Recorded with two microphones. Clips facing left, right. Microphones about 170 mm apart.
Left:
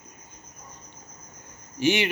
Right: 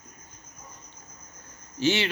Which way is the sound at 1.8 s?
15° left (ahead or behind).